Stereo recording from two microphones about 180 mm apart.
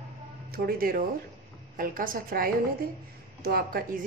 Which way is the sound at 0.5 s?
55° right (ahead or behind).